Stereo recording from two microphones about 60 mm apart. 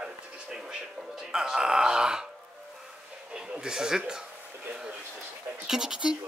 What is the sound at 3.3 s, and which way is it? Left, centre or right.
Speech, centre.